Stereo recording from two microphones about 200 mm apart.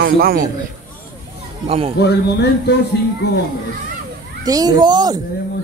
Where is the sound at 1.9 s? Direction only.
55° left (ahead or behind).